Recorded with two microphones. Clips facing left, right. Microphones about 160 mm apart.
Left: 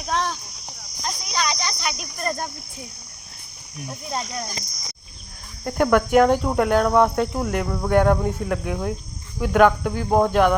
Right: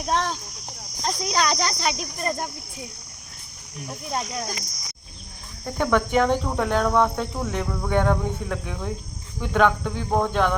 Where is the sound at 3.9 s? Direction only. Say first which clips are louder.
Even; centre (ahead or behind).